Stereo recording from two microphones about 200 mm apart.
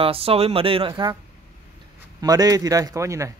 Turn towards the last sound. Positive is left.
turn(degrees=-15)  # may be behind; listen again after turning